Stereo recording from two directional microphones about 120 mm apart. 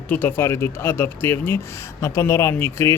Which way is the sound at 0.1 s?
20° left (ahead or behind).